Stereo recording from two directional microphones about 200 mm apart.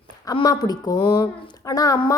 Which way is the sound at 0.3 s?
20° left (ahead or behind).